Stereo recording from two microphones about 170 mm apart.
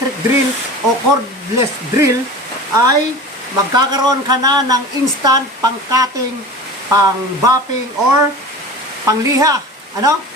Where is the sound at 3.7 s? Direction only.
20° right (ahead or behind).